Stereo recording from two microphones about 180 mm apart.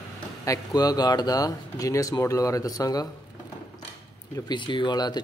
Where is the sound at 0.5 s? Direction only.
20° left (ahead or behind).